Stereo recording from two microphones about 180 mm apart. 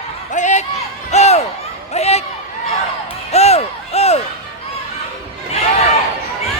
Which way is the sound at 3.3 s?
35° left (ahead or behind).